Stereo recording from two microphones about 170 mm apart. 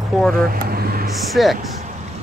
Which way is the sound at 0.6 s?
65° right (ahead or behind).